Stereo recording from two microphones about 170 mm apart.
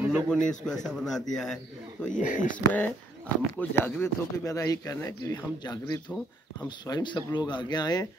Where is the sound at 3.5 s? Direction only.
10° left (ahead or behind).